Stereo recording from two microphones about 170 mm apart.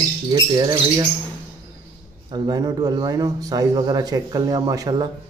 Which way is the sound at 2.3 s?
25° right (ahead or behind).